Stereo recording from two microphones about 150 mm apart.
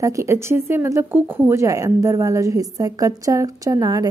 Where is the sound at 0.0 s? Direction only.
20° right (ahead or behind).